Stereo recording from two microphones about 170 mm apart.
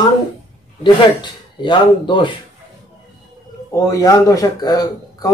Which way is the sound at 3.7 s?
20° left (ahead or behind).